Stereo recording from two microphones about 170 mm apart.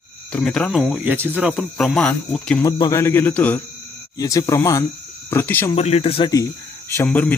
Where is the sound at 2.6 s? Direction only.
20° left (ahead or behind).